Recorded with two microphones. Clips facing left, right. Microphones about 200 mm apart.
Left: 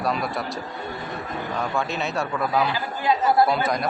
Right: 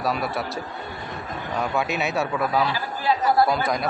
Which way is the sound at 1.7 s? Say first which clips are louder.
Right 3 dB; 5° right (ahead or behind).